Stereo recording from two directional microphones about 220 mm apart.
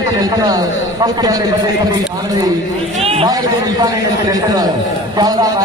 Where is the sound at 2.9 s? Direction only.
25° right (ahead or behind).